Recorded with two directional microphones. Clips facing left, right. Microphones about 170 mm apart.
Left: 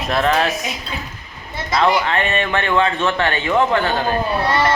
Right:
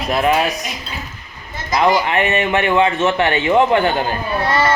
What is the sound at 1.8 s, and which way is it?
Speech, 20° right (ahead or behind).